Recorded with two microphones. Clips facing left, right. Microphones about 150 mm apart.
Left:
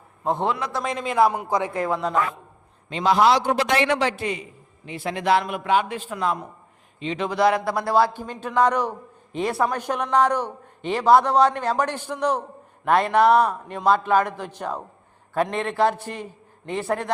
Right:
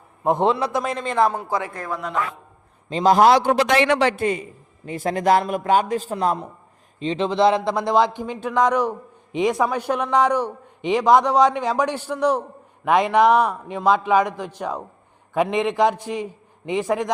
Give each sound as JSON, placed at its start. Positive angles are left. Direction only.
{"t": 0.3, "sound": "a man's voice", "side_deg": -15}
{"t": 0.8, "sound": "speech", "side_deg": 0}
{"t": 1.4, "sound": "a man's voice", "side_deg": 20}
{"t": 2.9, "sound": "a man's voice", "side_deg": -40}
{"t": 3.5, "sound": "speech", "side_deg": -90}
{"t": 4.2, "sound": "a man's voice", "side_deg": -45}